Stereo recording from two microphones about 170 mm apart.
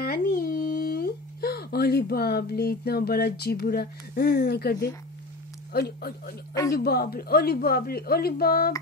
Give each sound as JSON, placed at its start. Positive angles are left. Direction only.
{"t": 0.0, "sound": "a woman's voice", "side_deg": 60}